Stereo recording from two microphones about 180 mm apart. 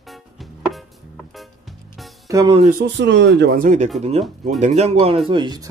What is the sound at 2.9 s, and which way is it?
Speech, 75° right (ahead or behind).